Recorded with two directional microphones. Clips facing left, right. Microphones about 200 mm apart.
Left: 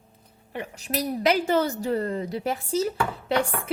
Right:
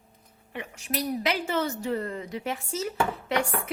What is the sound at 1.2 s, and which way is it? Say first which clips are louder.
A woman's voice: left 10 dB; 40° left (ahead or behind).